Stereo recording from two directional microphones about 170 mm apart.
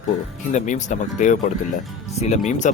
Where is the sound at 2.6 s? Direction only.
50° left (ahead or behind).